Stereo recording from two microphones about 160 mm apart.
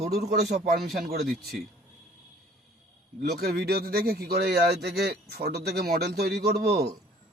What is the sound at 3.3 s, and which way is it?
A man's voice, 80° right.